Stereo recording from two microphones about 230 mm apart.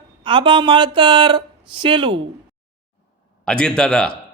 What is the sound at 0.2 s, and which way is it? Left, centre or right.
Speech, right.